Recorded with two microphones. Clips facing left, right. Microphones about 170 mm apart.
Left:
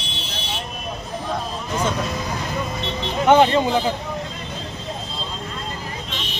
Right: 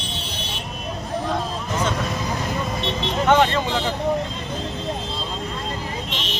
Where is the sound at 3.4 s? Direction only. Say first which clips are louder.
Left 3 dB; 25° left (ahead or behind).